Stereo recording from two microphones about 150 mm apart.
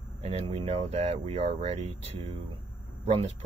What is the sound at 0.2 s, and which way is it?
Speech, 45° right (ahead or behind).